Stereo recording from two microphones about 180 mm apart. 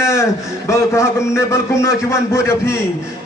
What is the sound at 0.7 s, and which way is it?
A man's voice, 15° left (ahead or behind).